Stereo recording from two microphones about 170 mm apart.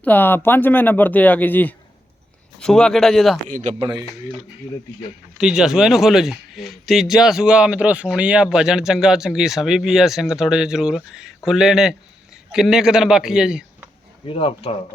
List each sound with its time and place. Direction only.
0.0 s speech: 10° left (ahead or behind)
3.5 s speech: 45° right (ahead or behind)
3.8 s speech: 30° right (ahead or behind)
5.4 s speech: 5° right (ahead or behind)
14.3 s speech: 30° left (ahead or behind)